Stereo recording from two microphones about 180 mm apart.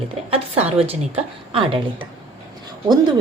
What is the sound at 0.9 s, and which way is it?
Speech, 30° right (ahead or behind).